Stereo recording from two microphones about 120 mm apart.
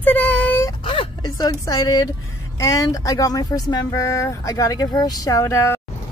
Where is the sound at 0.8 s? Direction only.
40° left (ahead or behind).